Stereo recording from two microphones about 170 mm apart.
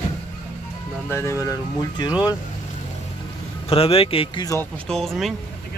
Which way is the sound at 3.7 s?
35° left (ahead or behind).